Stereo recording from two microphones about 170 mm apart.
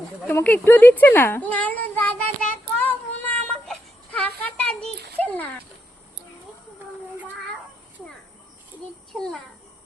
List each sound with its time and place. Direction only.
0.3 s a child's voice: 10° left (ahead or behind)
2.5 s child singing: 10° left (ahead or behind)
5.1 s dog: 10° left (ahead or behind)
9.1 s a child's voice: 5° left (ahead or behind)